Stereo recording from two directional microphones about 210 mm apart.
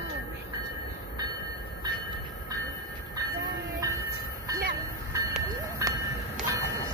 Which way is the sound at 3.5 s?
15° right (ahead or behind).